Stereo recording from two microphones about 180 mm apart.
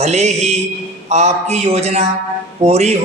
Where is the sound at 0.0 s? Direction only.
40° right (ahead or behind).